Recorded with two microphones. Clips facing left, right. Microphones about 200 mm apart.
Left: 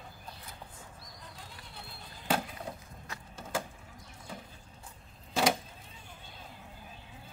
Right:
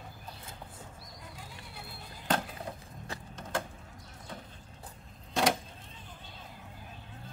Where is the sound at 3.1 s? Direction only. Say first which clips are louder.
Right 4 dB; 30° right (ahead or behind).